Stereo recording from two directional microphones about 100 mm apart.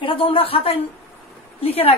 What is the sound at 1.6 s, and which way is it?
Speech, 80° left.